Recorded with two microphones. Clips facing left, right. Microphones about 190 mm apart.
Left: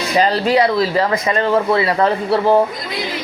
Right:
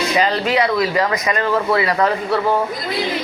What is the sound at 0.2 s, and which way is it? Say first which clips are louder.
Speech: left 5 dB; 35° left (ahead or behind).